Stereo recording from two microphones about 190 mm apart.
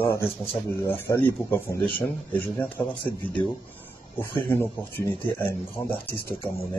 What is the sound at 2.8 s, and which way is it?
Speech, 10° left (ahead or behind).